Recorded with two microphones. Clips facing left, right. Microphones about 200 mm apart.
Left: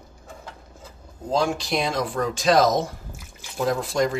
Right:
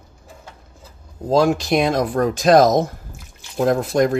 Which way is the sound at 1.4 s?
55° right (ahead or behind).